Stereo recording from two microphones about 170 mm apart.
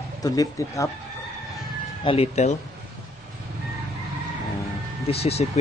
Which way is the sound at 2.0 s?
35° left (ahead or behind).